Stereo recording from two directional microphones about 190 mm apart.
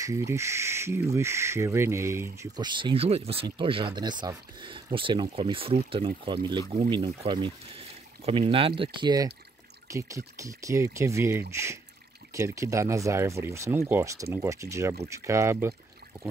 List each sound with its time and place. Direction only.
0.0 s speech: 15° right (ahead or behind)